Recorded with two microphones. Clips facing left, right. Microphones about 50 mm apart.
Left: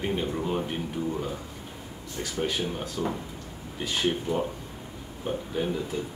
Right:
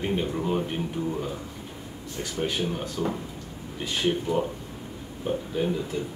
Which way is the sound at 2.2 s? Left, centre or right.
Centre.